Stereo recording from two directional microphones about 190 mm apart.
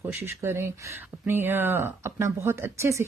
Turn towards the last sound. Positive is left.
turn(degrees=-15)  # may be behind; listen again after turning